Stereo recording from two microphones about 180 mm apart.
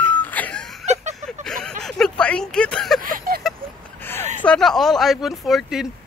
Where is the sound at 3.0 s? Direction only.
50° right (ahead or behind).